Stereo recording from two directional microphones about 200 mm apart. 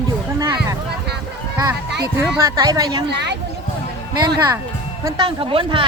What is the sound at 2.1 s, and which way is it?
Speech, 15° right (ahead or behind).